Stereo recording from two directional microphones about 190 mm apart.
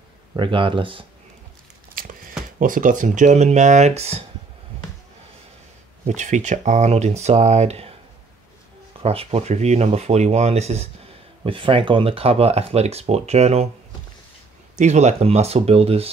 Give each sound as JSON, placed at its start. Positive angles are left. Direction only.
{"t": 0.4, "sound": "speech", "side_deg": -25}
{"t": 2.0, "sound": "a sound", "side_deg": -50}
{"t": 2.6, "sound": "speech", "side_deg": -45}
{"t": 6.0, "sound": "speech", "side_deg": -40}
{"t": 9.0, "sound": "speech", "side_deg": -30}
{"t": 14.8, "sound": "speech", "side_deg": -40}